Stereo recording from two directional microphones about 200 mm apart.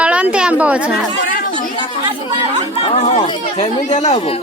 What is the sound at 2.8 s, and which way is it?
A man's voice, 35° left (ahead or behind).